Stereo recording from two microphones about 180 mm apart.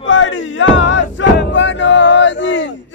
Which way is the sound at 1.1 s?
90° left.